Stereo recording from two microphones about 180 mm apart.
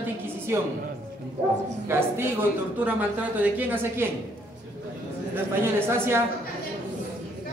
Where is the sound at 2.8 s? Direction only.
10° right (ahead or behind).